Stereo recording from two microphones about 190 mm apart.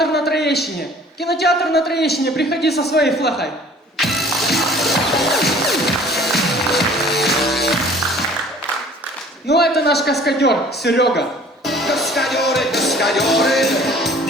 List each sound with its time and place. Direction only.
0.3 s a sound: 60° left (ahead or behind)
1.2 s speech: 60° left (ahead or behind)
3.9 s music: centre (ahead or behind)
9.7 s speech: 60° left (ahead or behind)
11.6 s music: centre (ahead or behind)